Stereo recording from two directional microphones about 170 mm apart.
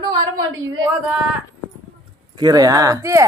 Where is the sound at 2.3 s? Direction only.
25° right (ahead or behind).